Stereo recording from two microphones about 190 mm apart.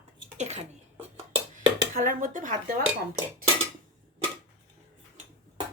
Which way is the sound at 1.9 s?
45° right (ahead or behind).